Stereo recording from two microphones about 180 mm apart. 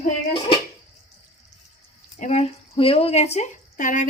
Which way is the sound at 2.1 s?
40° left (ahead or behind).